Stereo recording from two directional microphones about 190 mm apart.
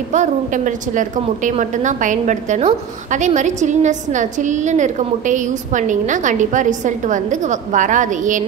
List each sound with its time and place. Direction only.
0.1 s a woman's voice: 40° right (ahead or behind)